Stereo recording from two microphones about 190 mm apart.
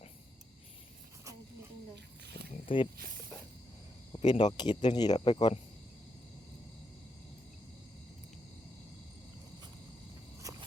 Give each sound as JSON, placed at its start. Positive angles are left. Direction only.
{"t": 2.6, "sound": "speech", "side_deg": 30}
{"t": 4.3, "sound": "speech", "side_deg": 25}
{"t": 10.4, "sound": "walk", "side_deg": -15}